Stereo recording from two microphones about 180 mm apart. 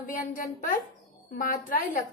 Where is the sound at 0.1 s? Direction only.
45° left (ahead or behind).